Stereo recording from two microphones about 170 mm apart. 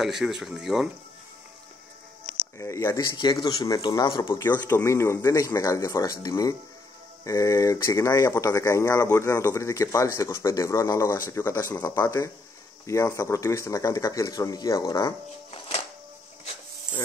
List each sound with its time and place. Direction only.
0.0 s speech: centre (ahead or behind)
2.6 s speech: 15° left (ahead or behind)
4.2 s speech: 15° left (ahead or behind)